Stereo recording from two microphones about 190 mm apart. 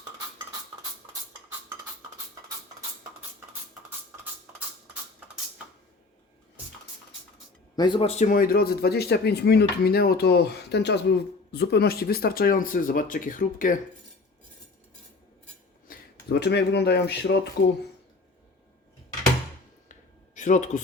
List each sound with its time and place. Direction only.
7.8 s speech: 25° left (ahead or behind); by 13.7 s 45° left (ahead or behind)
15.9 s speech: 60° left (ahead or behind)
19.9 s a sound: 40° left (ahead or behind)